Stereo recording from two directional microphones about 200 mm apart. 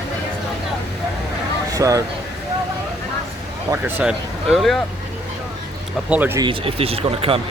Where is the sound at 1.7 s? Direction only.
15° right (ahead or behind).